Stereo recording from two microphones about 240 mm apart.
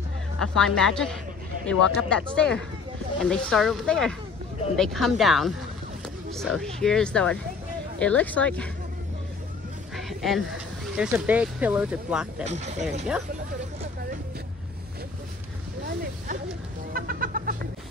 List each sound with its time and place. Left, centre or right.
0.4 s speech: centre
9.9 s a sound: centre
11.0 s speech: centre
12.4 s speech: right
16.9 s cat: right